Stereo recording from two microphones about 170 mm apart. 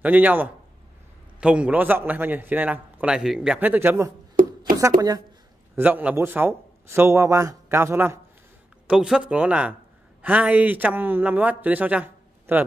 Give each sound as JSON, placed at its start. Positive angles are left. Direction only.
{"t": 0.0, "sound": "a man's voice", "side_deg": -10}
{"t": 5.8, "sound": "a man's voice", "side_deg": -10}
{"t": 8.8, "sound": "a man's voice", "side_deg": -5}